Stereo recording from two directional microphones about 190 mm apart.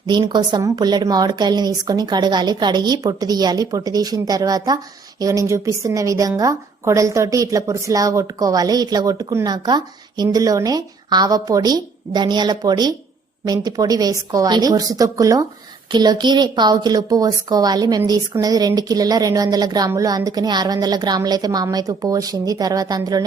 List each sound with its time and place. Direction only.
0.1 s a woman's voice: 25° right (ahead or behind)